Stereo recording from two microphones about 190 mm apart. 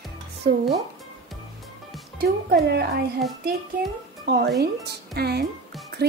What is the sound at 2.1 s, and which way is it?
Speech, 55° right (ahead or behind).